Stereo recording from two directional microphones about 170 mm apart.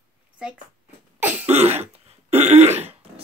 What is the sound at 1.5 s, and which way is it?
Throat clearing, 40° right (ahead or behind).